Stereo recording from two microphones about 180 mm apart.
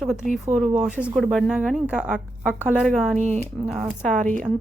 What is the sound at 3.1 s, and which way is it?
Speech, 40° right (ahead or behind).